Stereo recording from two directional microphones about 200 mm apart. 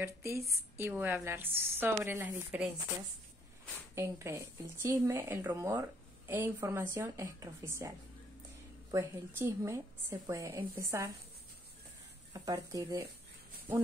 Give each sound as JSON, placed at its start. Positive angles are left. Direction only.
{"t": 0.0, "sound": "a woman's voice", "side_deg": -15}
{"t": 3.9, "sound": "a woman's voice", "side_deg": -15}
{"t": 8.9, "sound": "a woman's voice", "side_deg": -15}
{"t": 12.3, "sound": "a woman's voice", "side_deg": -20}